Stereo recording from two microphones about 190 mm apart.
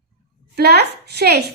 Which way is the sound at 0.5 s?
60° right (ahead or behind).